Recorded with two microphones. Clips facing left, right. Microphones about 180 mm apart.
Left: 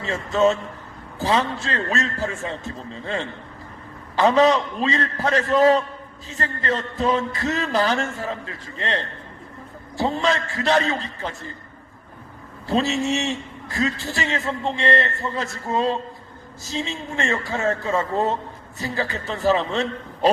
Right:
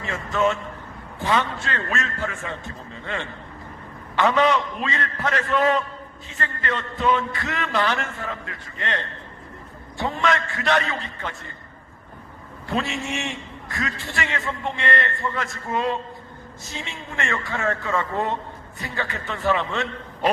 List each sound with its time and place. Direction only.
0.0 s a man's voice: 30° left (ahead or behind)
10.0 s a man's voice: 30° left (ahead or behind)
12.6 s a man's voice: 30° left (ahead or behind)